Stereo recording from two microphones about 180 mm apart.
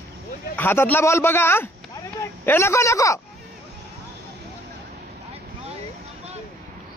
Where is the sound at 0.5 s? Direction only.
10° left (ahead or behind).